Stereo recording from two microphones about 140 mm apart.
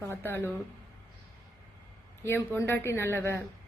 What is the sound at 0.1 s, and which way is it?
Speech, 15° left (ahead or behind).